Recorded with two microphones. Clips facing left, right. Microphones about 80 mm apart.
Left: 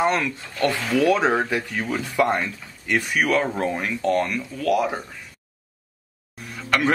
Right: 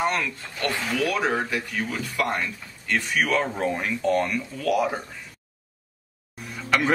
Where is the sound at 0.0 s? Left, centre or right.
Centre.